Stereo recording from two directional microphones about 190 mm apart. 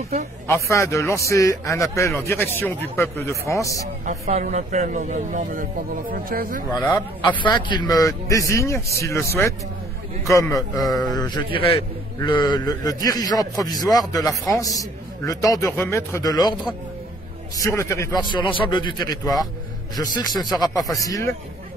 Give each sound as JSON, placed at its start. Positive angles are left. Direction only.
{"t": 0.5, "sound": "a man's voice", "side_deg": 15}
{"t": 4.0, "sound": "speech", "side_deg": -35}
{"t": 6.8, "sound": "a man's voice", "side_deg": 10}
{"t": 7.7, "sound": "a man's voice", "side_deg": 20}
{"t": 17.6, "sound": "a man's voice", "side_deg": 15}